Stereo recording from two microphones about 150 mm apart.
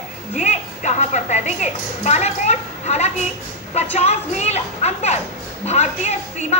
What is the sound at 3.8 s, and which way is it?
A woman's voice, 50° left (ahead or behind).